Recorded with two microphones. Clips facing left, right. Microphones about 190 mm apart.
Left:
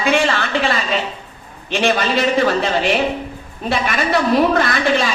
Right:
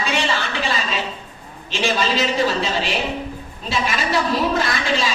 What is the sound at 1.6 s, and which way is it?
A woman's voice, 60° left (ahead or behind).